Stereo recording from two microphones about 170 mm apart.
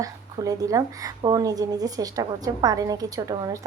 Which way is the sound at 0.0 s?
20° right (ahead or behind).